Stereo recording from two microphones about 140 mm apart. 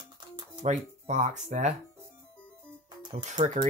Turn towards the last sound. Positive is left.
turn(degrees=-60)  # may be behind; listen again after turning